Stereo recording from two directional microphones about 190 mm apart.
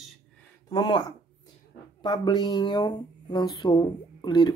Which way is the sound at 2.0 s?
25° left (ahead or behind).